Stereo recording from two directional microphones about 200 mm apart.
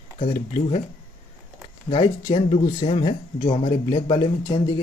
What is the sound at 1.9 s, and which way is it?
Speech, 25° left (ahead or behind).